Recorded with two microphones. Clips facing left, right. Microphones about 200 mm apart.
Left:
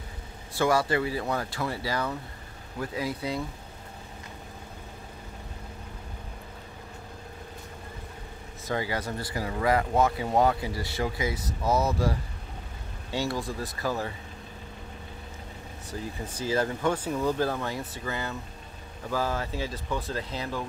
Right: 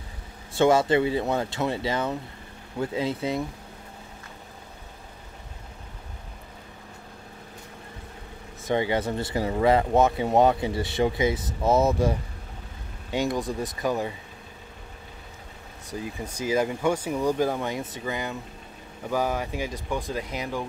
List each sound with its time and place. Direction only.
0.6 s speech: 25° right (ahead or behind)
8.6 s speech: 25° right (ahead or behind)
15.9 s speech: 15° right (ahead or behind)